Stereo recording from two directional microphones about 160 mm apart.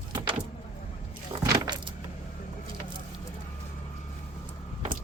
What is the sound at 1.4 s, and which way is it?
Keys jangling, 25° right (ahead or behind).